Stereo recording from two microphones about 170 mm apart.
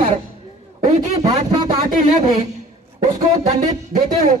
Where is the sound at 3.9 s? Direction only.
65° right (ahead or behind).